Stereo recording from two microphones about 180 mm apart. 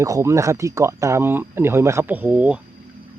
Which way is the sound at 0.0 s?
15° right (ahead or behind).